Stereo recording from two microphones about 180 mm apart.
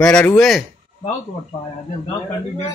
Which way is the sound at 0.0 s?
5° left (ahead or behind).